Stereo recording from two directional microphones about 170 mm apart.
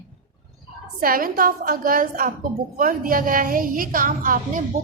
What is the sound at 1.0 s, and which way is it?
A woman's voice, 60° right (ahead or behind).